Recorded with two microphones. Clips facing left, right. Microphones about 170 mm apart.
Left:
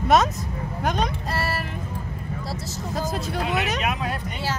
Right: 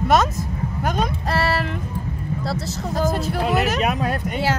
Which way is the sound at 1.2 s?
75° right (ahead or behind).